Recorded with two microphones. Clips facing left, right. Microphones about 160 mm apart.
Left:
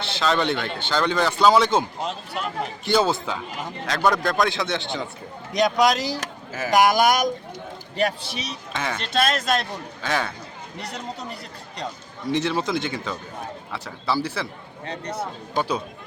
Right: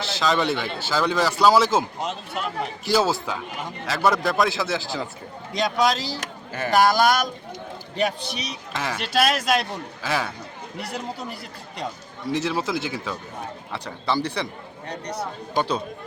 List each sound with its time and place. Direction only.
0.0 s a man's voice: centre (ahead or behind)
5.5 s speech: 20° left (ahead or behind)
7.9 s a man's voice: centre (ahead or behind)